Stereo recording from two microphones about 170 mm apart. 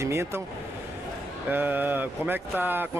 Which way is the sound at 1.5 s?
10° right (ahead or behind).